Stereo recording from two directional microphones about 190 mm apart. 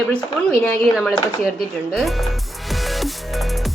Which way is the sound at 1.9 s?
Centre (ahead or behind).